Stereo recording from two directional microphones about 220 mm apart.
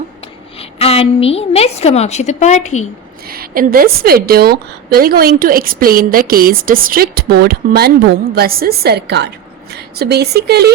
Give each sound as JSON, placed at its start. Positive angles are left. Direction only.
{"t": 0.8, "sound": "a woman's voice", "side_deg": 25}
{"t": 3.2, "sound": "a woman's voice", "side_deg": -40}